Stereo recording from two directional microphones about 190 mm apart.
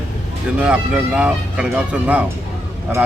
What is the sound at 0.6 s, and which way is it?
A woman's voice, 5° right (ahead or behind).